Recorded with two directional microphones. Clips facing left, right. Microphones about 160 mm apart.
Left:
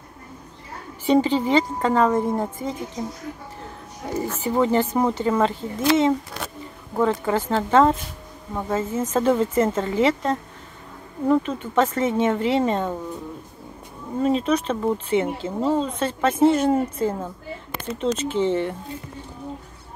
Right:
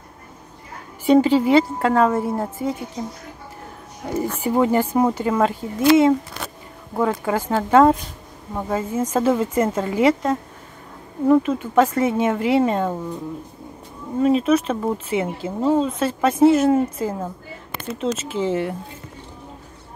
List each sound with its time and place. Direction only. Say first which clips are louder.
1.0 s speech: right 4 dB; 10° right (ahead or behind)
4.4 s speech: right 1 dB; 10° right (ahead or behind)
14.4 s speech: right 3 dB; 5° right (ahead or behind)